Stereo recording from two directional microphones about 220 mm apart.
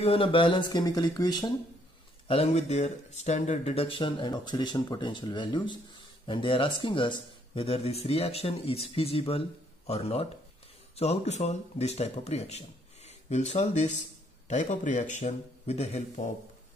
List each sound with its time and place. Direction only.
0.0 s speech: 25° left (ahead or behind)